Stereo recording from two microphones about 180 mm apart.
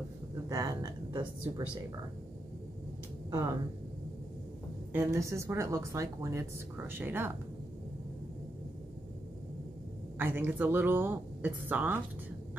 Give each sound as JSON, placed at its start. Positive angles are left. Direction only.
{"t": 0.5, "sound": "a woman's voice", "side_deg": -15}
{"t": 3.3, "sound": "speech", "side_deg": -15}
{"t": 4.9, "sound": "a woman's voice", "side_deg": -15}
{"t": 10.1, "sound": "a woman's voice", "side_deg": -10}